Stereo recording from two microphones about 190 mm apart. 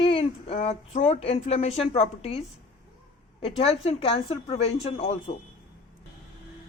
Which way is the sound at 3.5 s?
30° left (ahead or behind).